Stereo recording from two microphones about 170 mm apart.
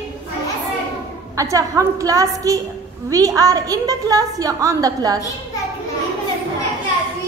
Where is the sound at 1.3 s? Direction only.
20° right (ahead or behind).